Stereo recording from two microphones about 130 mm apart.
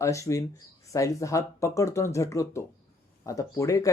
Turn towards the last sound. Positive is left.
turn(degrees=25)  # may be behind; listen again after turning